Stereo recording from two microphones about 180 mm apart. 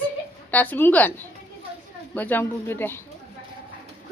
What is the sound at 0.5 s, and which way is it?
Speech, 10° left (ahead or behind).